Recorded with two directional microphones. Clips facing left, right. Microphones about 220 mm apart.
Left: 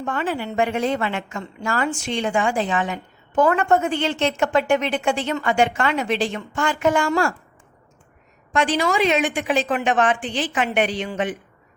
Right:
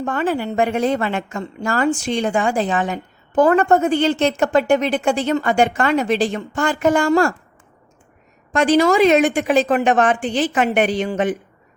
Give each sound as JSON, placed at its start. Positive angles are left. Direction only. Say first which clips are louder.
{"t": 0.0, "sound": "a woman's voice", "louder": "right 4 dB", "side_deg": -45}
{"t": 8.5, "sound": "a woman's voice", "louder": "right 6 dB", "side_deg": -40}